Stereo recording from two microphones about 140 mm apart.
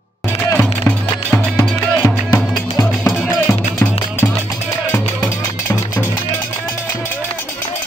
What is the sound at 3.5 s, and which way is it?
Music, 15° left (ahead or behind).